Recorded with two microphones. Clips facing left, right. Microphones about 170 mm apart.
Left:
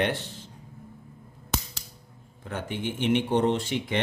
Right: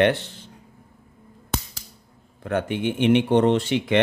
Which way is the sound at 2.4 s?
65° right (ahead or behind).